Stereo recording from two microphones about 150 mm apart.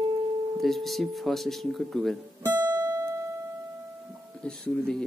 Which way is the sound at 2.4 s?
15° right (ahead or behind).